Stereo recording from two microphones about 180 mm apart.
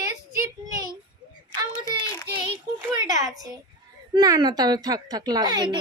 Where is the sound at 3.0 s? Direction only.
20° right (ahead or behind).